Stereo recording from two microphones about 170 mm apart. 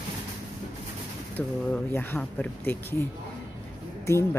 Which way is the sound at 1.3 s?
10° left (ahead or behind).